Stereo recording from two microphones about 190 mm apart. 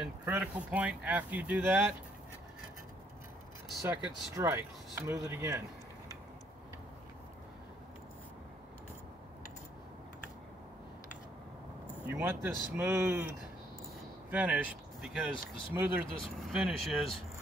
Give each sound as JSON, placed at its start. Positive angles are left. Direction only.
{"t": 0.0, "sound": "speech", "side_deg": -10}
{"t": 4.4, "sound": "speech", "side_deg": -15}
{"t": 12.1, "sound": "speech", "side_deg": -10}
{"t": 14.3, "sound": "speech", "side_deg": -5}